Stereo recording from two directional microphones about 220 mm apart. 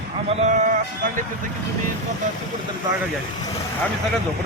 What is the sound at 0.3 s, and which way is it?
Speech, 30° right (ahead or behind).